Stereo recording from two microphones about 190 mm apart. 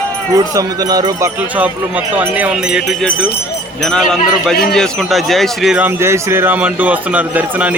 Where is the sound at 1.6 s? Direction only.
10° right (ahead or behind).